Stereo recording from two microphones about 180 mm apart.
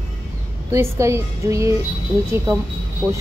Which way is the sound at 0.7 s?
15° right (ahead or behind).